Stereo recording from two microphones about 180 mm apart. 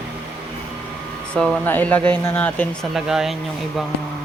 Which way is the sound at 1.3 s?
5° left (ahead or behind).